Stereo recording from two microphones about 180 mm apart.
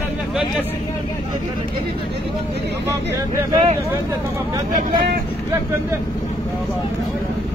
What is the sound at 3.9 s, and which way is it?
Speech, 20° right (ahead or behind).